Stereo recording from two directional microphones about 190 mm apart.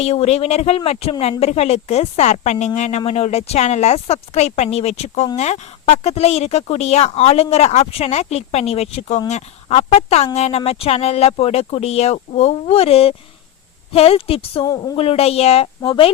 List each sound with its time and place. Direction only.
0.0 s speech: 35° left (ahead or behind)